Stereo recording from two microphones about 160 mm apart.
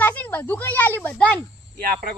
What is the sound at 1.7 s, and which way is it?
Speech, 60° right (ahead or behind).